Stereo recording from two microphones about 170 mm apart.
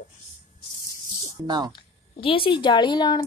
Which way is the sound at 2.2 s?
30° left (ahead or behind).